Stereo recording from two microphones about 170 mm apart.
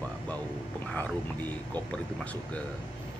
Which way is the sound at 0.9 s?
10° left (ahead or behind).